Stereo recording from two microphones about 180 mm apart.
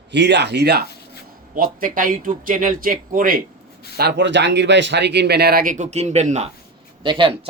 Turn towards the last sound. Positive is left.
turn(degrees=-30)  # may be behind; listen again after turning